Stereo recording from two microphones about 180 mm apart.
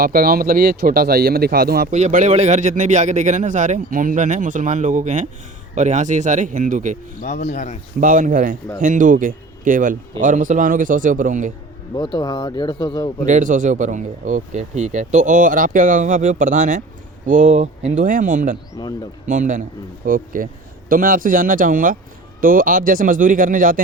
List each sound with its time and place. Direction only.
0.0 s speech: 55° right (ahead or behind)
1.9 s speech: 40° right (ahead or behind)
7.2 s speech: 45° left (ahead or behind)
8.0 s speech: 45° right (ahead or behind)
12.1 s speech: 20° left (ahead or behind)
13.2 s speech: 45° right (ahead or behind)